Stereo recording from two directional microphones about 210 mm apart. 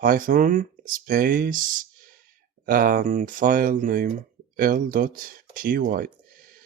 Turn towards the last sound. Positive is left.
turn(degrees=-40)  # may be behind; listen again after turning